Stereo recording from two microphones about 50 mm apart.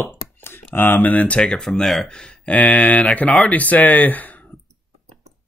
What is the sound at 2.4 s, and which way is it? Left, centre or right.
Speech, left.